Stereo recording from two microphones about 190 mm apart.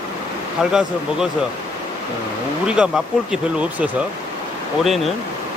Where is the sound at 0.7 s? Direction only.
5° right (ahead or behind).